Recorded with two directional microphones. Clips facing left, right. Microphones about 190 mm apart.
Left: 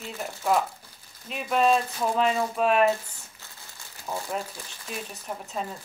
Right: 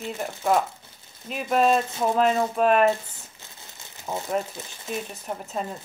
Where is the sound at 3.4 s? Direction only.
20° right (ahead or behind).